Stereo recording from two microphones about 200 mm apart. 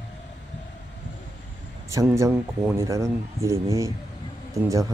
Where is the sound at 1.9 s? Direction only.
15° right (ahead or behind).